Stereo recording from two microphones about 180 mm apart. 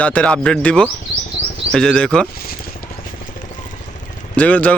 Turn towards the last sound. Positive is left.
turn(degrees=10)  # may be behind; listen again after turning